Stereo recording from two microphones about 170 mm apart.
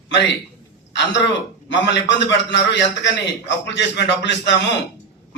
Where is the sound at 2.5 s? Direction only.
90° left.